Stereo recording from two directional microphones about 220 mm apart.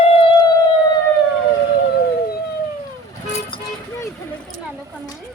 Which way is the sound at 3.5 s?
10° left (ahead or behind).